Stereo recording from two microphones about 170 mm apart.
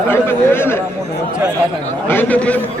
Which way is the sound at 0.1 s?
15° left (ahead or behind).